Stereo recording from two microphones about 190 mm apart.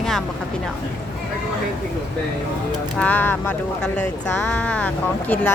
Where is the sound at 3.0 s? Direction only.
10° left (ahead or behind).